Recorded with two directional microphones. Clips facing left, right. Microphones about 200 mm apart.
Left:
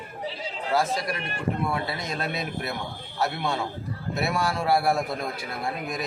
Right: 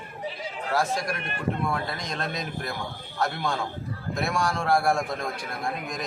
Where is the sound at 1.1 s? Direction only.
55° right (ahead or behind).